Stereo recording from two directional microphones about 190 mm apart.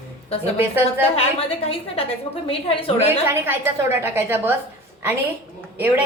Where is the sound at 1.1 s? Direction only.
30° left (ahead or behind).